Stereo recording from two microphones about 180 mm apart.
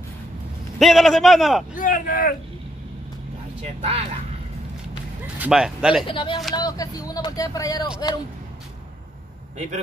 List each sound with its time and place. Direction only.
0.7 s a man's voice: centre (ahead or behind)
1.8 s speech: 45° left (ahead or behind)
5.2 s speech: 5° right (ahead or behind)
6.0 s speech: 30° left (ahead or behind)